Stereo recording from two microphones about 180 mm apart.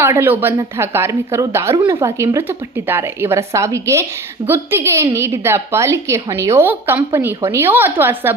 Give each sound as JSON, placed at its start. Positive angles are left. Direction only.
{"t": 0.0, "sound": "a woman's voice", "side_deg": -15}